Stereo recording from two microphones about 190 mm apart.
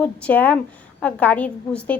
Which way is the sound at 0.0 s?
10° left (ahead or behind).